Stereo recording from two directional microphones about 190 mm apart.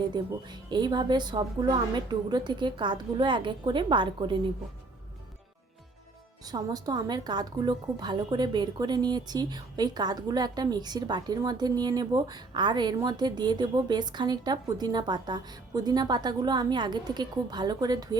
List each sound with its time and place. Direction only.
0.0 s a woman's voice: 20° right (ahead or behind)
6.4 s a woman's voice: 20° right (ahead or behind)